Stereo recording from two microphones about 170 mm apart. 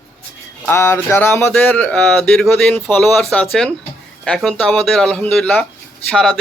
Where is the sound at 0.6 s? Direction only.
15° left (ahead or behind).